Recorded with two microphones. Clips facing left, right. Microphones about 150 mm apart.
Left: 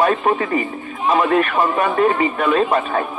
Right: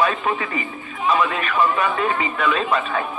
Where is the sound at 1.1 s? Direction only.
45° left (ahead or behind).